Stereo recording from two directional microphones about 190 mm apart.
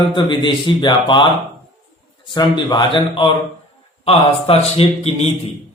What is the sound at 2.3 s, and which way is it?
Speech, 20° left (ahead or behind).